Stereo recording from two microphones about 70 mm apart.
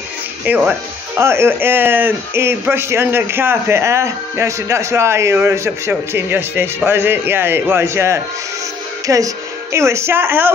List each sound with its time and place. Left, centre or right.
0.5 s speech: right
1.1 s speech: right
9.0 s a woman's voice: right